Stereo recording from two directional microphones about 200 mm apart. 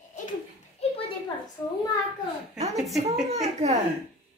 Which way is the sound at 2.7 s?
Centre (ahead or behind).